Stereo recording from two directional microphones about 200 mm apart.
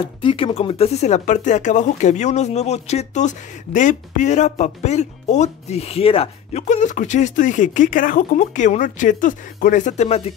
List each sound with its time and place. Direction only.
0.2 s speech: 25° left (ahead or behind)